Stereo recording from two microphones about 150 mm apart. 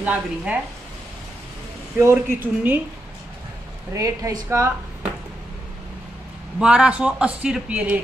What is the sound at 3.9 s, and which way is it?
Speech, 20° right (ahead or behind).